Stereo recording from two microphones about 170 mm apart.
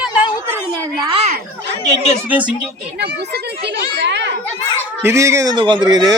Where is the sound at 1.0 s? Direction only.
35° right (ahead or behind).